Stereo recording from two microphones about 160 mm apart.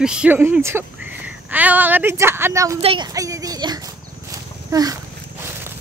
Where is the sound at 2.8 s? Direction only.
35° right (ahead or behind).